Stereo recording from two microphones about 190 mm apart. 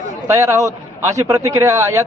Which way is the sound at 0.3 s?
15° right (ahead or behind).